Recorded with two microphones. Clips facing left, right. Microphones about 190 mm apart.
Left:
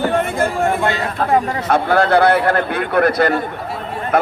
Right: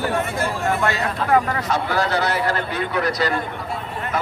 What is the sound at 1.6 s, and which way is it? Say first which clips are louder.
A man's voice: left 7 dB; 55° left (ahead or behind).